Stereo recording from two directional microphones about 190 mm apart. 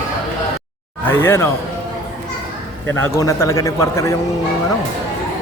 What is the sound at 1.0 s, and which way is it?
Speech, 10° left (ahead or behind).